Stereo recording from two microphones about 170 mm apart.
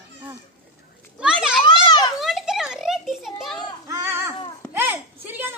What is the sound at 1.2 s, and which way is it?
A child's voice, 5° right (ahead or behind).